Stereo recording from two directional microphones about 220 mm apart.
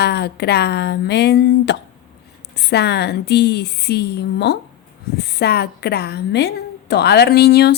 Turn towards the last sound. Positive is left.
turn(degrees=50)  # may be behind; listen again after turning